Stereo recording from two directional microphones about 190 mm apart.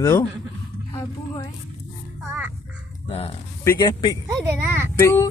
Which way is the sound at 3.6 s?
20° left (ahead or behind).